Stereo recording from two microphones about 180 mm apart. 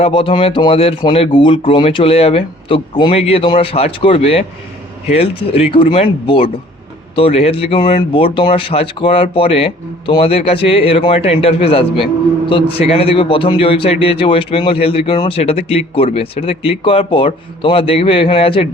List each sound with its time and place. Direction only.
0.0 s a man's voice: 30° left (ahead or behind)